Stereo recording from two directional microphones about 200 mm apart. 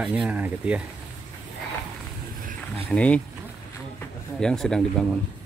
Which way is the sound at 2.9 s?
5° left (ahead or behind).